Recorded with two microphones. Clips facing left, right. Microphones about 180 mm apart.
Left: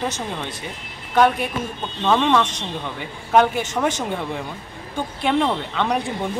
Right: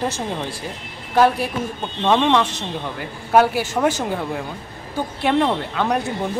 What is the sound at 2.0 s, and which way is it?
Speech, 15° right (ahead or behind).